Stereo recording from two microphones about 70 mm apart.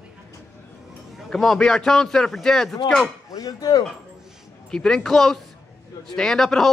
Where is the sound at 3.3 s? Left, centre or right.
Left.